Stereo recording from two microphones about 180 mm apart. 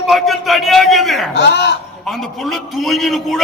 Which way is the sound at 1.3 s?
70° left (ahead or behind).